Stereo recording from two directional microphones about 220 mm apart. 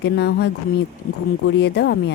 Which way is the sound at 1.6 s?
50° left (ahead or behind).